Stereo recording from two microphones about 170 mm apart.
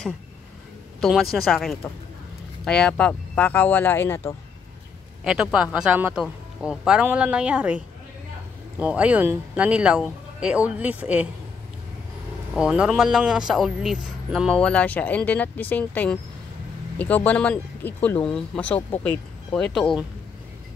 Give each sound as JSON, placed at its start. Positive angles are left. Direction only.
{"t": 1.3, "sound": "speech", "side_deg": 0}
{"t": 5.2, "sound": "speech", "side_deg": -5}
{"t": 12.5, "sound": "speech", "side_deg": -5}